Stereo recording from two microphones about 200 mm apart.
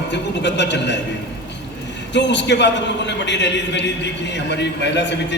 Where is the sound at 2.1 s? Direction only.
60° left (ahead or behind).